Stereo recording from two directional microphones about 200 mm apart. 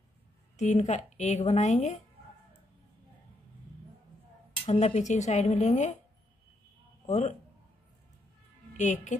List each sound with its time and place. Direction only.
0.6 s a woman's voice: 35° left (ahead or behind)
4.6 s a woman's voice: 35° left (ahead or behind)
7.1 s a woman's voice: 35° left (ahead or behind)
8.7 s a woman's voice: 35° left (ahead or behind)